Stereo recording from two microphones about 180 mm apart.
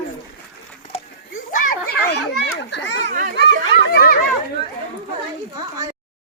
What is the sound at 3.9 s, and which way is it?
Speech, 55° left (ahead or behind).